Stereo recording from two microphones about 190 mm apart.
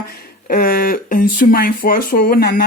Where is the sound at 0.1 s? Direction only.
55° left (ahead or behind).